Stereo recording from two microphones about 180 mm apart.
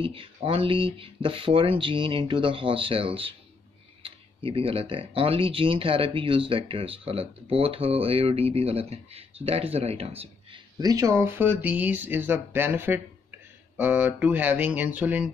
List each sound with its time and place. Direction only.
0.0 s speech: 30° right (ahead or behind)
10.8 s speech: 20° right (ahead or behind)